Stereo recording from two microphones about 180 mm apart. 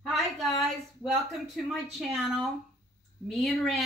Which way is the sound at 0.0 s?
Centre (ahead or behind).